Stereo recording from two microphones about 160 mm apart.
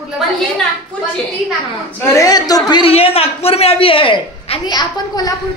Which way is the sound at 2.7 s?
35° left (ahead or behind).